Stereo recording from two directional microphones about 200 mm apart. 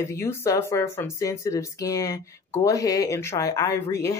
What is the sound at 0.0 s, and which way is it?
Speech, 15° left (ahead or behind).